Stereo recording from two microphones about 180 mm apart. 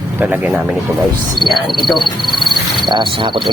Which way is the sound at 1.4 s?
Centre (ahead or behind).